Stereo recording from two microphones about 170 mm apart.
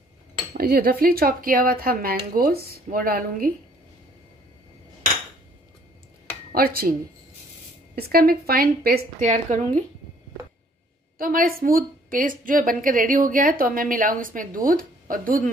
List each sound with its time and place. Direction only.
0.6 s speech: 65° right (ahead or behind)
6.5 s speech: 60° right (ahead or behind)
9.2 s a woman's voice: 45° right (ahead or behind)
11.1 s a woman's voice: 55° right (ahead or behind)